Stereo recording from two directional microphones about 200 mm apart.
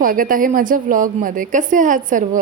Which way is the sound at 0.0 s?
45° right (ahead or behind).